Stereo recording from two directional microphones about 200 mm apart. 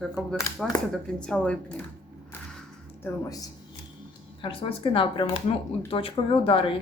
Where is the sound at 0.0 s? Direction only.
Centre (ahead or behind).